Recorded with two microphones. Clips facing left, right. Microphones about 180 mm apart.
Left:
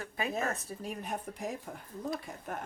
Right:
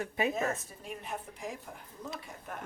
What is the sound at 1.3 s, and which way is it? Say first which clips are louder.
Speech: left 3 dB; 50° left (ahead or behind).